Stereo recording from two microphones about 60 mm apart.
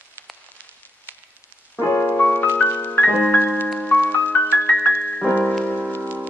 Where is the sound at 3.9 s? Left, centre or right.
Left.